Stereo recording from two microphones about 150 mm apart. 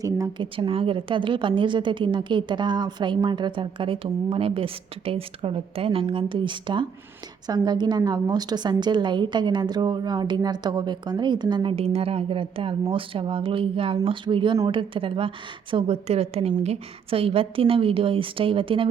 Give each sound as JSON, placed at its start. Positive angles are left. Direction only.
{"t": 0.0, "sound": "a woman's voice", "side_deg": -25}
{"t": 0.4, "sound": "a woman's voice", "side_deg": -35}